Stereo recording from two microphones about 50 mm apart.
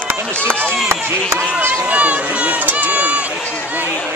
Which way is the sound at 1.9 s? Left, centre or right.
Right.